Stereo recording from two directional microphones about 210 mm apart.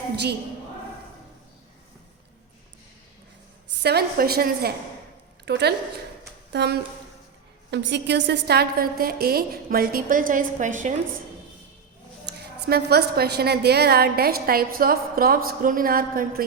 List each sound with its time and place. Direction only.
3.8 s a woman's voice: 50° right (ahead or behind)
12.6 s a woman's voice: 50° right (ahead or behind)